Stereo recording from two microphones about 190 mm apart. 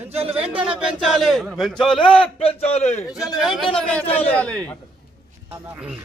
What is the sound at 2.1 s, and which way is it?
Speech, 30° left (ahead or behind).